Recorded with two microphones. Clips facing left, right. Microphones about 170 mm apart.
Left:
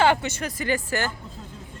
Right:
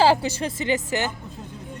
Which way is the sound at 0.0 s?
30° right (ahead or behind).